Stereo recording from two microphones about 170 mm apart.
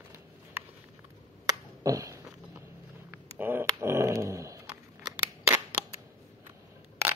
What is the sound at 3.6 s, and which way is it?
Dog, 15° right (ahead or behind).